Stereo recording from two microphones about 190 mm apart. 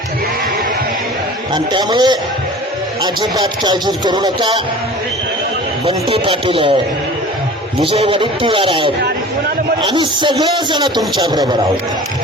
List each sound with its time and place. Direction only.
1.5 s speech: 25° right (ahead or behind)
3.3 s speech: 25° right (ahead or behind)
5.8 s speech: 30° right (ahead or behind)
7.8 s speech: 30° right (ahead or behind)
9.9 s speech: 25° right (ahead or behind)